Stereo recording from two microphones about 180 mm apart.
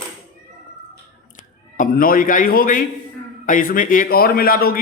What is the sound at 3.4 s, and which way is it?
A man's voice, 50° left (ahead or behind).